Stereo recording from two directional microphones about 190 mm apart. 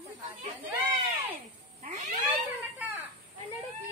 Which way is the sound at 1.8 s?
35° right (ahead or behind).